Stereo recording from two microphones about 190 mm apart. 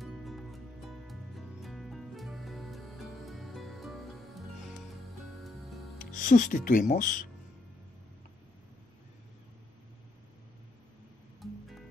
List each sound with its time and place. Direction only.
0.0 s music: centre (ahead or behind)
5.9 s speech: 45° left (ahead or behind)
11.4 s music: centre (ahead or behind)